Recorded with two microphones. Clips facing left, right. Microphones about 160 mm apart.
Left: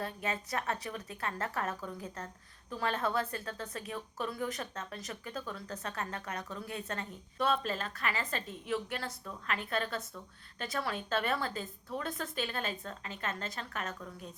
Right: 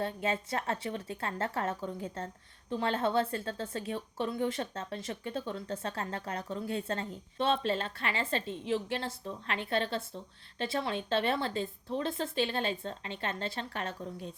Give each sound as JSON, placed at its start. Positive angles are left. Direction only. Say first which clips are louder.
{"t": 0.0, "sound": "a woman's voice", "louder": "right 4 dB", "side_deg": -25}